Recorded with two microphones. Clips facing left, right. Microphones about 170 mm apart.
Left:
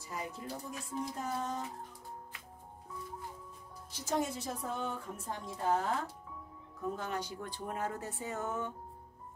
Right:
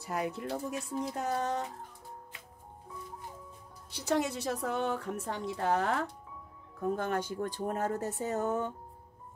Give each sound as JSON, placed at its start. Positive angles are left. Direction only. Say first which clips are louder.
{"t": 0.0, "sound": "a woman's voice", "louder": "right 7 dB", "side_deg": -65}
{"t": 3.9, "sound": "a woman's voice", "louder": "right 4 dB", "side_deg": -70}
{"t": 6.8, "sound": "speech", "louder": "right 6 dB", "side_deg": -55}